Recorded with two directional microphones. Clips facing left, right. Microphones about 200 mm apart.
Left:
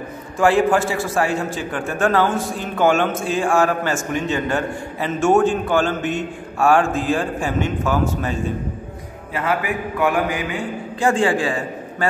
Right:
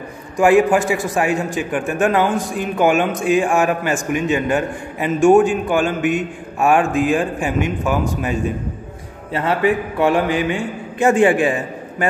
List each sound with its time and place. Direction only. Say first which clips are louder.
0.4 s a man's voice: right 3 dB; 15° right (ahead or behind)
9.3 s a man's voice: right 5 dB; 30° right (ahead or behind)